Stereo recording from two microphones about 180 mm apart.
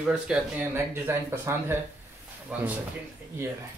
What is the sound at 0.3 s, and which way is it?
Speech, 10° right (ahead or behind).